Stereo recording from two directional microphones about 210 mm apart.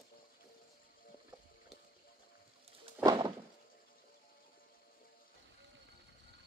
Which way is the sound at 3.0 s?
20° right (ahead or behind).